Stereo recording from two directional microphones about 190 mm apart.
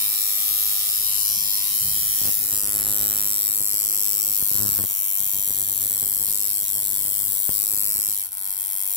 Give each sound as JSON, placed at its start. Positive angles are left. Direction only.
{"t": 1.0, "sound": "electric shaver", "side_deg": 45}